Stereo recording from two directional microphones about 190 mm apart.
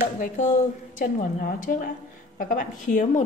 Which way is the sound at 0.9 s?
45° left (ahead or behind).